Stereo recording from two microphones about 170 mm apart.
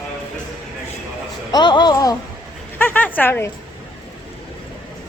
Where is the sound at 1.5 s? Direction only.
25° left (ahead or behind).